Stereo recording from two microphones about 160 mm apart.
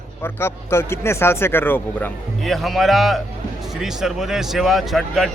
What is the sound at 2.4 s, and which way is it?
Speech, centre (ahead or behind).